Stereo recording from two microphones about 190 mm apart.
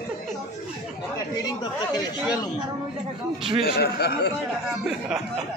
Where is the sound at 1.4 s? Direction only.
20° left (ahead or behind).